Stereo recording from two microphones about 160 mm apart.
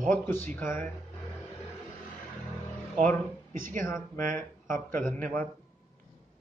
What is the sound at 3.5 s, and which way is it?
Speech, 60° right (ahead or behind).